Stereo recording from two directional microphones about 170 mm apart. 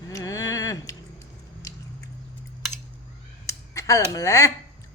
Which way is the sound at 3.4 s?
20° left (ahead or behind).